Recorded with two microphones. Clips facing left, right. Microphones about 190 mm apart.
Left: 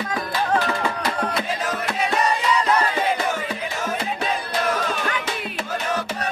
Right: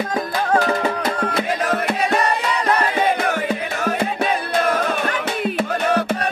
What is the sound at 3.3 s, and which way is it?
Music, 65° right (ahead or behind).